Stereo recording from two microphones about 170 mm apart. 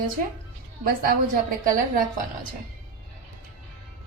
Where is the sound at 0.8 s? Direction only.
55° right (ahead or behind).